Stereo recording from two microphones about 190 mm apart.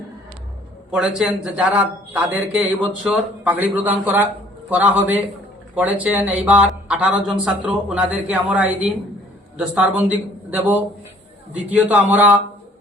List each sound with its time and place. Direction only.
0.9 s a man's voice: 5° right (ahead or behind)